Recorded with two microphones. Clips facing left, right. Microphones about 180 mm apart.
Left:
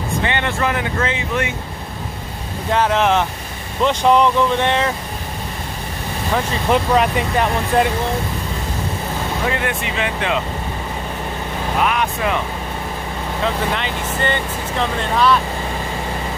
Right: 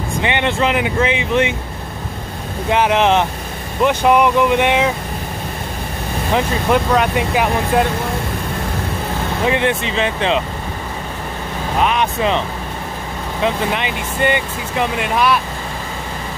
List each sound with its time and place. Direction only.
0.2 s speech: 20° right (ahead or behind)
2.7 s speech: 15° right (ahead or behind)
3.8 s speech: 10° right (ahead or behind)
6.7 s speech: centre (ahead or behind)
9.5 s speech: 25° right (ahead or behind)
11.8 s speech: 25° right (ahead or behind)
13.4 s speech: 15° right (ahead or behind)